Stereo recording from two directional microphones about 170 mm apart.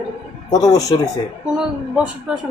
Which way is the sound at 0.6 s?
20° left (ahead or behind).